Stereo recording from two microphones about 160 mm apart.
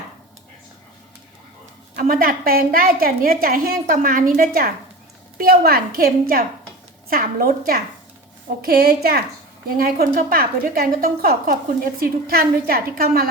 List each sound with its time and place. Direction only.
2.0 s a woman's voice: 60° right (ahead or behind)